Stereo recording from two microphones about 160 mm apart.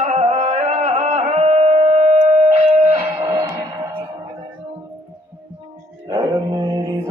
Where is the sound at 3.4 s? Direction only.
25° right (ahead or behind).